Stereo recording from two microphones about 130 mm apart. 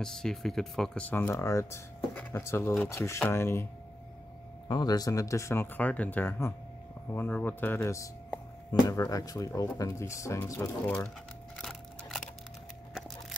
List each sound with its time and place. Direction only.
0.0 s speech: 5° left (ahead or behind); by 3.6 s 20° left (ahead or behind)
4.6 s speech: 30° left (ahead or behind)
11.5 s crushing: 5° left (ahead or behind)